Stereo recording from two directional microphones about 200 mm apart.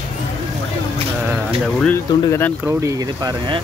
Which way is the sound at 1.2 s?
Centre (ahead or behind).